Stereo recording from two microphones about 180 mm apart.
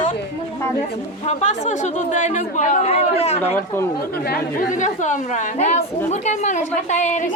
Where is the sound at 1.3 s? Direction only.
40° left (ahead or behind).